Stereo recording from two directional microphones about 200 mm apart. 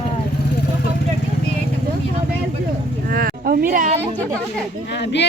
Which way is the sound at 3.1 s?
45° right (ahead or behind).